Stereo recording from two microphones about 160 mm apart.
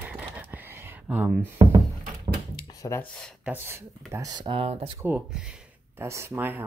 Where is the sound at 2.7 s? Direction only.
20° left (ahead or behind).